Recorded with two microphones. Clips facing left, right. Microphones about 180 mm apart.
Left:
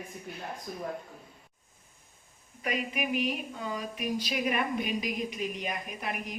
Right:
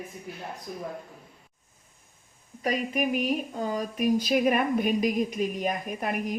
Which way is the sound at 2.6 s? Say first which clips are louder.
Right 5 dB; 40° right (ahead or behind).